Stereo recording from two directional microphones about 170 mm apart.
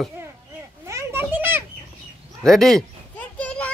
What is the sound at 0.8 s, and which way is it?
Children playing, 15° right (ahead or behind).